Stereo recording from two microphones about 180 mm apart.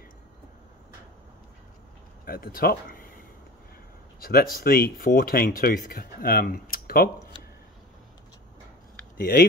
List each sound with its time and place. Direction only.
2.2 s speech: 55° left (ahead or behind)
4.2 s speech: 55° left (ahead or behind)
9.2 s speech: 55° left (ahead or behind)